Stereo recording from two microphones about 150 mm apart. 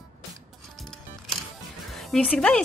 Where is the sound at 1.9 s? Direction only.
5° left (ahead or behind).